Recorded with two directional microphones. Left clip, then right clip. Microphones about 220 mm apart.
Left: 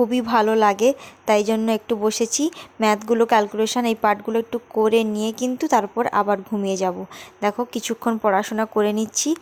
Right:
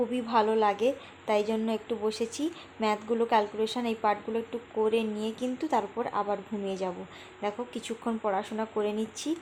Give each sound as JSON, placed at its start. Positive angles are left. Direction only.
{"t": 0.1, "sound": "a woman's voice", "side_deg": 30}